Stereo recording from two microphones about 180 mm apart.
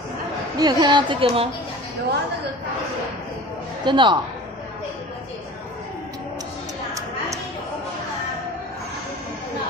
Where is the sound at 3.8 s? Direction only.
25° right (ahead or behind).